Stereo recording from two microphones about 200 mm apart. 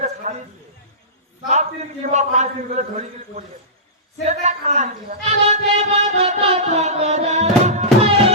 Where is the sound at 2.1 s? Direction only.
35° right (ahead or behind).